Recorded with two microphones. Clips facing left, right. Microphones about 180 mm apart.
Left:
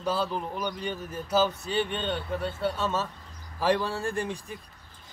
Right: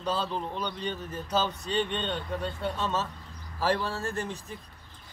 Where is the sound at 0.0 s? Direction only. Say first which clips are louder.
Left 2 dB; 10° left (ahead or behind).